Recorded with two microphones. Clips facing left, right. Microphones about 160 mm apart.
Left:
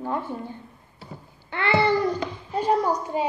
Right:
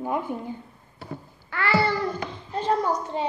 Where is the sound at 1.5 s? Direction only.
20° left (ahead or behind).